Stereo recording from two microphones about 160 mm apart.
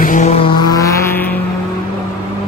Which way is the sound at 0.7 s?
20° left (ahead or behind).